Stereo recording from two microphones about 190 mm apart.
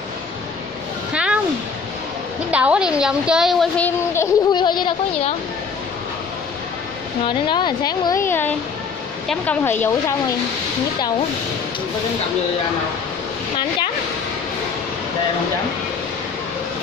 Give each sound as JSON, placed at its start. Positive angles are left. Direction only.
{"t": 1.1, "sound": "a sound", "side_deg": -5}
{"t": 2.5, "sound": "a woman's voice", "side_deg": -5}
{"t": 4.5, "sound": "a woman's voice", "side_deg": 25}
{"t": 7.2, "sound": "a woman's voice", "side_deg": 25}